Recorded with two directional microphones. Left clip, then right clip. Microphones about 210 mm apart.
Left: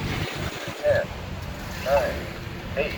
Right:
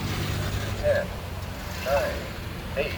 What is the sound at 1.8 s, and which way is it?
Speech, 20° right (ahead or behind).